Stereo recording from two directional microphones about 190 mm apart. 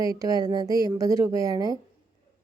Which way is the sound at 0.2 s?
20° right (ahead or behind).